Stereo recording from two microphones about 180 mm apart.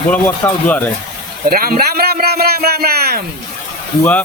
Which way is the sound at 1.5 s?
55° right (ahead or behind).